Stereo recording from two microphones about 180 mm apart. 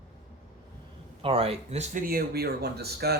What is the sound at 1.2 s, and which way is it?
Speech, 30° right (ahead or behind).